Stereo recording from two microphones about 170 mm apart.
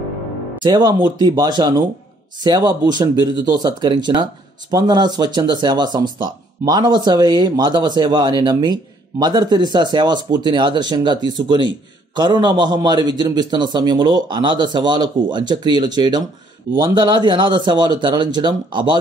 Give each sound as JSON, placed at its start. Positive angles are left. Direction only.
{"t": 0.6, "sound": "speech", "side_deg": -25}